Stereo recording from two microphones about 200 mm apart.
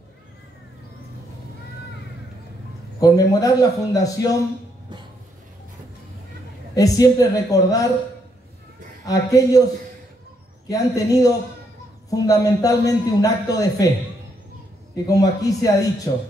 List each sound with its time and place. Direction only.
3.0 s a man's voice: 20° left (ahead or behind)
6.7 s a man's voice: 20° left (ahead or behind)
9.0 s a man's voice: 15° left (ahead or behind)
10.7 s a man's voice: 15° left (ahead or behind)
15.0 s a man's voice: 15° left (ahead or behind)